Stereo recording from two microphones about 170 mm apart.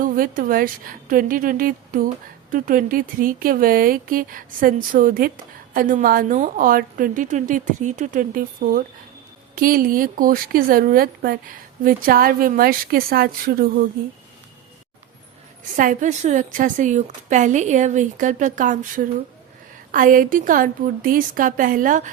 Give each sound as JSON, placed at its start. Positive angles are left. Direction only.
{"t": 0.0, "sound": "a woman's voice", "side_deg": -55}
{"t": 15.7, "sound": "a woman's voice", "side_deg": -50}